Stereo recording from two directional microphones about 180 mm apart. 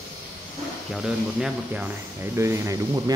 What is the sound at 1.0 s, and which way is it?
Speech, 5° right (ahead or behind).